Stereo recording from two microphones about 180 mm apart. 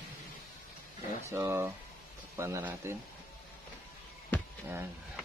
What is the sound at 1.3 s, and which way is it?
A man's voice, 15° right (ahead or behind).